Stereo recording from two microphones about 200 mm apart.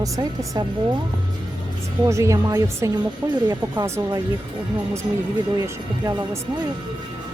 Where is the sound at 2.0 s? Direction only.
15° right (ahead or behind).